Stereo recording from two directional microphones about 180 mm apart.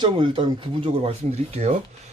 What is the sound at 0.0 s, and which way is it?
Speech, 30° right (ahead or behind).